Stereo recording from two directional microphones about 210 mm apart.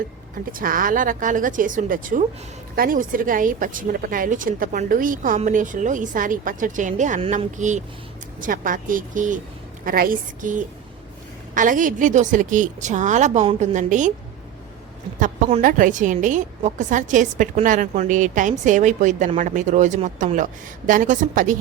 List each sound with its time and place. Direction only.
0.5 s a woman's voice: 40° right (ahead or behind)
15.2 s a woman's voice: 35° right (ahead or behind)